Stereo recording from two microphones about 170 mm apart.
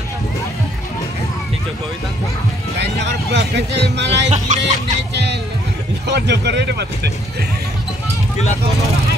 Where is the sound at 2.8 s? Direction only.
80° right.